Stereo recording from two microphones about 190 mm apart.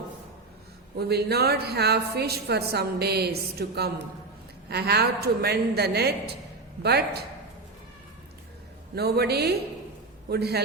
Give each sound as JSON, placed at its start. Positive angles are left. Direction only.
{"t": 0.9, "sound": "speech", "side_deg": -60}
{"t": 9.0, "sound": "speech", "side_deg": -55}